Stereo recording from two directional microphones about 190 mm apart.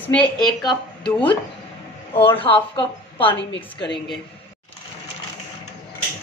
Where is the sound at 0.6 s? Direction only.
25° left (ahead or behind).